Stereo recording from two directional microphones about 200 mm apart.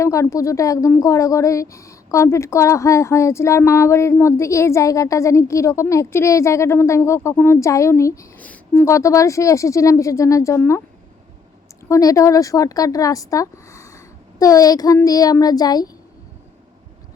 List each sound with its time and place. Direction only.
0.0 s a woman's voice: 15° left (ahead or behind)
11.9 s speech: 15° left (ahead or behind)